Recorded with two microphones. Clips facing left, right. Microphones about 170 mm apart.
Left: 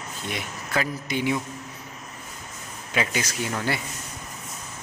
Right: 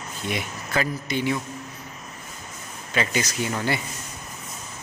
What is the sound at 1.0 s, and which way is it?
Speech, 10° left (ahead or behind).